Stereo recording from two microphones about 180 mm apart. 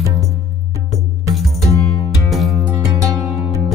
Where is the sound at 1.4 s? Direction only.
Centre (ahead or behind).